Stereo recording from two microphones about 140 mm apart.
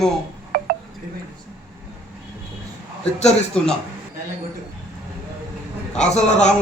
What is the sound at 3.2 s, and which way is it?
Speech, 55° left (ahead or behind).